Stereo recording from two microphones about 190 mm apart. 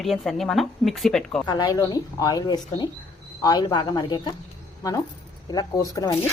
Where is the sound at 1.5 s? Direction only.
20° left (ahead or behind).